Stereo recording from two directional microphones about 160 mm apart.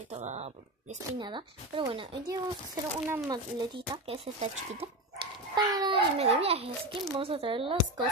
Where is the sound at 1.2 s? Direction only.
30° right (ahead or behind).